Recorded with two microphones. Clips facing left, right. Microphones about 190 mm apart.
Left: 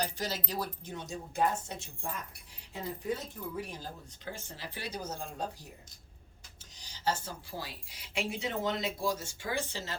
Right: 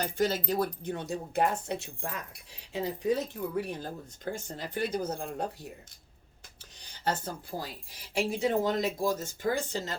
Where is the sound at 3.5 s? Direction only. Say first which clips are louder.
Right 6 dB; 60° right (ahead or behind).